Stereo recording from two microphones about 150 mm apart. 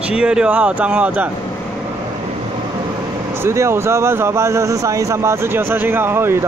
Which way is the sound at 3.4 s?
15° right (ahead or behind).